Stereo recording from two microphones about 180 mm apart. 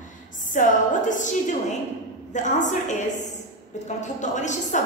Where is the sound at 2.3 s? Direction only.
45° left (ahead or behind).